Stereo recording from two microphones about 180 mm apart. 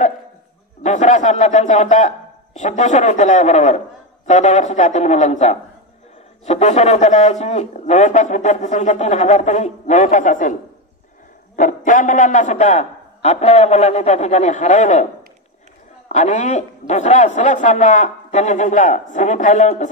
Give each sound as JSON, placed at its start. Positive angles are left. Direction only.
{"t": 0.8, "sound": "speech", "side_deg": 40}
{"t": 11.5, "sound": "speech", "side_deg": 45}
{"t": 16.1, "sound": "speech", "side_deg": 40}